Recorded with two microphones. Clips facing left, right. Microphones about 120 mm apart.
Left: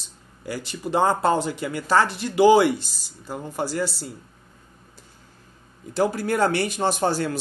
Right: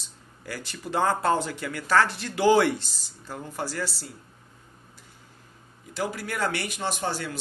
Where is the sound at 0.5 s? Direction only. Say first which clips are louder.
Left 6 dB; 20° left (ahead or behind).